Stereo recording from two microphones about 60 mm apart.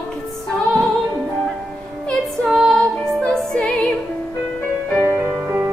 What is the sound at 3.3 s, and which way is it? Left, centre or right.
Music, centre.